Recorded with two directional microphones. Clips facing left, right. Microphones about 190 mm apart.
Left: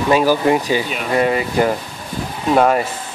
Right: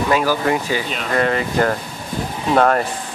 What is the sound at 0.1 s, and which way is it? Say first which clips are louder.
Speech: left 5 dB; 20° left (ahead or behind).